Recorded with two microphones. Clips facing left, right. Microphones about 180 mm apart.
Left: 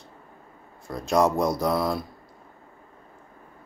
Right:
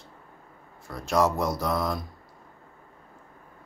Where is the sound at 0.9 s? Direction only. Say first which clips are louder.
Left 3 dB; 15° left (ahead or behind).